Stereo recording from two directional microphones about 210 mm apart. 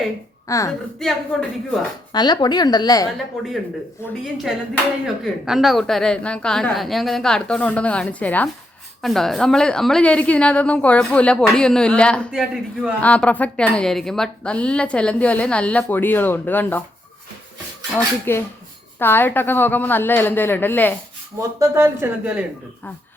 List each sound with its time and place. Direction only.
0.4 s a woman's voice: 15° left (ahead or behind)
0.9 s a woman's voice: centre (ahead or behind)
2.1 s a woman's voice: 20° left (ahead or behind)
5.0 s a woman's voice: centre (ahead or behind)
18.3 s a woman's voice: 10° left (ahead or behind)
21.6 s speech: 10° right (ahead or behind)